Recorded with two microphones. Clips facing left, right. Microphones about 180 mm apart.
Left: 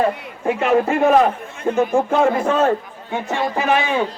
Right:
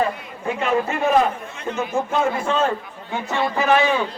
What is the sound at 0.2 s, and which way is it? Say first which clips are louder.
A man's voice: left 5 dB; 60° left (ahead or behind).